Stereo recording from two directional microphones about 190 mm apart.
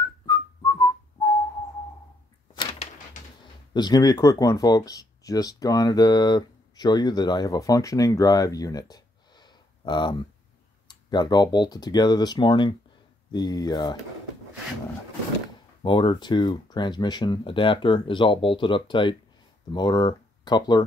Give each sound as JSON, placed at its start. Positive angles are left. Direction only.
{"t": 0.3, "sound": "whistling", "side_deg": 20}
{"t": 2.5, "sound": "door", "side_deg": 25}
{"t": 3.7, "sound": "speech", "side_deg": 20}
{"t": 15.8, "sound": "speech", "side_deg": 25}